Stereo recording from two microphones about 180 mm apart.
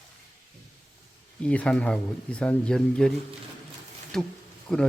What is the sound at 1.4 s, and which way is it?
Speech, 5° left (ahead or behind).